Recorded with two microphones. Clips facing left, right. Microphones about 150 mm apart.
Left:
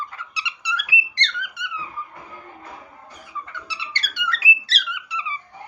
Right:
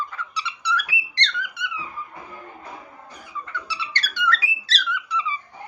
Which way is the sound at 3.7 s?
20° left (ahead or behind).